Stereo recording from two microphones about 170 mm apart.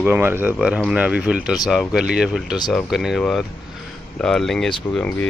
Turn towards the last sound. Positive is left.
turn(degrees=10)  # may be behind; listen again after turning